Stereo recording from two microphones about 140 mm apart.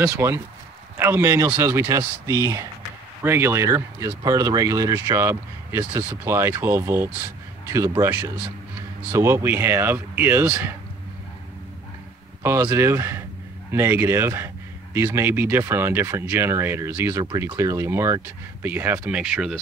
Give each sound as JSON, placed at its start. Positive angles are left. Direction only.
{"t": 0.2, "sound": "speech", "side_deg": -20}
{"t": 12.4, "sound": "speech", "side_deg": -20}